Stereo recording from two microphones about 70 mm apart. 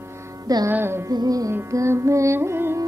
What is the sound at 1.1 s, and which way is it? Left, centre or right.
Music, right.